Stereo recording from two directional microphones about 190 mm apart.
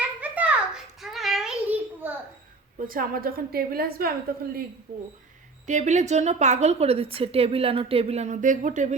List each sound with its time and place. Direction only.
0.0 s a sound: 5° right (ahead or behind)
2.7 s a woman's voice: 50° right (ahead or behind)
5.6 s a woman's voice: 40° right (ahead or behind)